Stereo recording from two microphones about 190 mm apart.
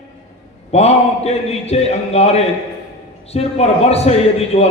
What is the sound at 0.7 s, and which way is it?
A man's voice, 35° left (ahead or behind).